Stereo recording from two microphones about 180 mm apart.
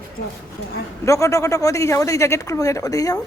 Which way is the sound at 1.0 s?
15° left (ahead or behind).